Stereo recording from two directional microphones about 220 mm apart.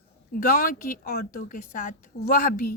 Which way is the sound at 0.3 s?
40° left (ahead or behind).